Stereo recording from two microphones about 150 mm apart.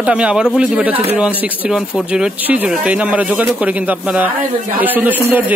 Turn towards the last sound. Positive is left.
turn(degrees=-15)  # may be behind; listen again after turning